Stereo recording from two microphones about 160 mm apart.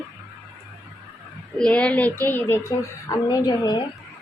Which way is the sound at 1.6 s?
5° left (ahead or behind).